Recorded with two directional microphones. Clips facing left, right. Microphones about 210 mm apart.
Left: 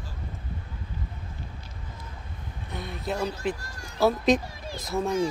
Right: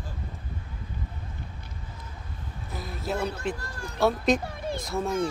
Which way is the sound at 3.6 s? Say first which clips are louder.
Right 5 dB; 60° right (ahead or behind).